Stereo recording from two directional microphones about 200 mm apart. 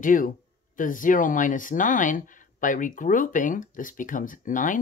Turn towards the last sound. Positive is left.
turn(degrees=40)  # may be behind; listen again after turning